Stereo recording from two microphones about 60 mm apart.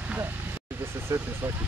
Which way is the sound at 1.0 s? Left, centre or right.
Right.